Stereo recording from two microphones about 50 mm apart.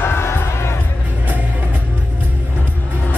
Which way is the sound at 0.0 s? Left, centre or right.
Left.